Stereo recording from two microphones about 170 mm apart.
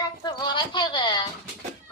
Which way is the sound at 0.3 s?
25° left (ahead or behind).